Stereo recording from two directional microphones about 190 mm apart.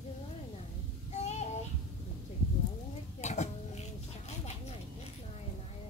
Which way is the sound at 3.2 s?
35° left (ahead or behind).